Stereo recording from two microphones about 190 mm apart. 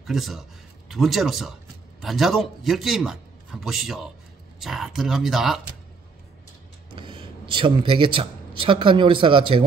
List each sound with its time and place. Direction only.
0.0 s a man's voice: centre (ahead or behind)
7.0 s speech: 25° right (ahead or behind)